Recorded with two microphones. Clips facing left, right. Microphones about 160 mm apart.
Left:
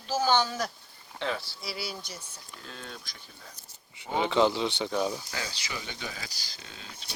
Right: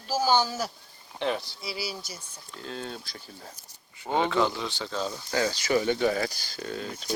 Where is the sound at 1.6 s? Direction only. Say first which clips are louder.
Left 1 dB; centre (ahead or behind).